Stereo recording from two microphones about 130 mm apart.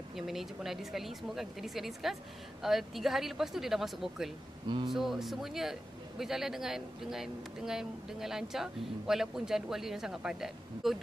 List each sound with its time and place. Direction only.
0.1 s a man's voice: centre (ahead or behind)
4.6 s speech: 40° right (ahead or behind)
4.9 s a man's voice: centre (ahead or behind)